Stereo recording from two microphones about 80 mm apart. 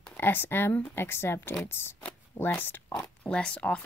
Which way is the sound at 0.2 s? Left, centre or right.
Left.